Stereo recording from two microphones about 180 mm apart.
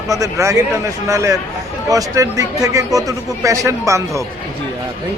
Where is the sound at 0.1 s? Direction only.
20° right (ahead or behind).